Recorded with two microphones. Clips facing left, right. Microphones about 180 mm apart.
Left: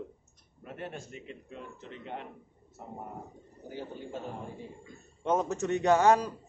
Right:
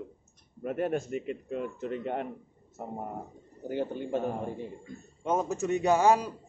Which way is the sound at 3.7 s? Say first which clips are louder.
Right 9 dB; 60° right (ahead or behind).